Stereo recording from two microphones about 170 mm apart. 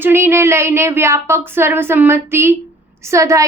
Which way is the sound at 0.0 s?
15° right (ahead or behind).